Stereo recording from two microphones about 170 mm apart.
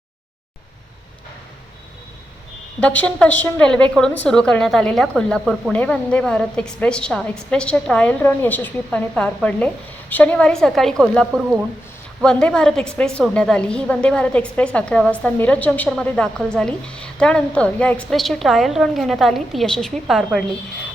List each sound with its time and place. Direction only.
3.0 s a woman's voice: 10° left (ahead or behind)